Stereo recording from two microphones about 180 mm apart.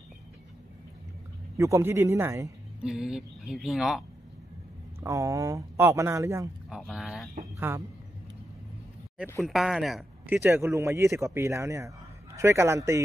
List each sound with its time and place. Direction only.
1.6 s speech: 15° right (ahead or behind)
2.8 s speech: 5° right (ahead or behind)
5.0 s speech: 20° right (ahead or behind)
6.7 s speech: 5° right (ahead or behind)
7.5 s speech: 10° right (ahead or behind)
9.4 s speech: centre (ahead or behind)